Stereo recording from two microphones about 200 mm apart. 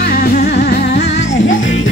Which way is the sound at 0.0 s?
50° left (ahead or behind).